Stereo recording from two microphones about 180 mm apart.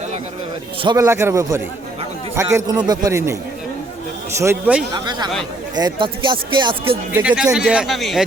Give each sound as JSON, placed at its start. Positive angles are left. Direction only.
{"t": 0.8, "sound": "speech", "side_deg": -25}
{"t": 1.0, "sound": "a man's voice", "side_deg": -15}
{"t": 4.4, "sound": "a man's voice", "side_deg": -10}
{"t": 4.9, "sound": "speech", "side_deg": -25}
{"t": 7.1, "sound": "a man's voice", "side_deg": -10}